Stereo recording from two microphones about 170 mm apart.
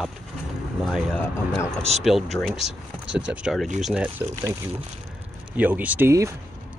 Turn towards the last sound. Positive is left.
turn(degrees=-15)  # may be behind; listen again after turning